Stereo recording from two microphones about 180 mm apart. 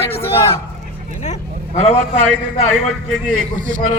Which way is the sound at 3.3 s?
50° right (ahead or behind).